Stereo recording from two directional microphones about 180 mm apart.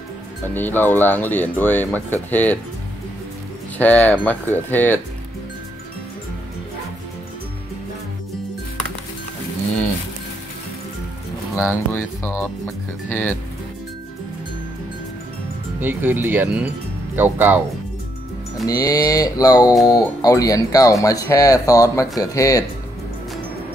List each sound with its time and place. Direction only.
0.6 s speech: 10° left (ahead or behind)
3.7 s speech: 10° left (ahead or behind)
11.5 s speech: 10° left (ahead or behind)
15.8 s speech: 10° right (ahead or behind)
18.7 s speech: 20° left (ahead or behind)